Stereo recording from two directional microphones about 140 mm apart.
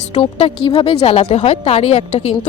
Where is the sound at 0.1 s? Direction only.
50° left (ahead or behind).